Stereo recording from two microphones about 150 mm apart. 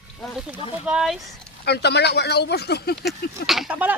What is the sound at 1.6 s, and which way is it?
Speech, 90° left.